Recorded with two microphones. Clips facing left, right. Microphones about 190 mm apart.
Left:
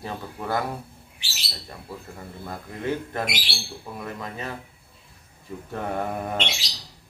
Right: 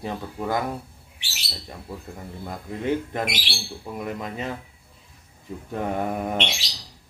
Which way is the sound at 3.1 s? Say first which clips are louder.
Right 1 dB; 15° right (ahead or behind).